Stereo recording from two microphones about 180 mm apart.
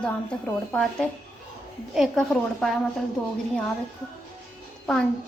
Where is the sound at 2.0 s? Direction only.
Centre (ahead or behind).